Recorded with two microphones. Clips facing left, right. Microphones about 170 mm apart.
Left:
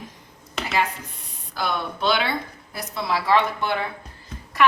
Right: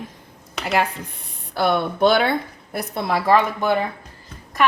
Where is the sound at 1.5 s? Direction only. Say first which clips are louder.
Right 7 dB; 60° right (ahead or behind).